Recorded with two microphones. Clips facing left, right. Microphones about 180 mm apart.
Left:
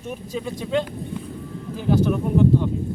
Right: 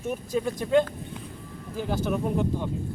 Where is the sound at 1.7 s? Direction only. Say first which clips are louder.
Left 7 dB; 10° right (ahead or behind).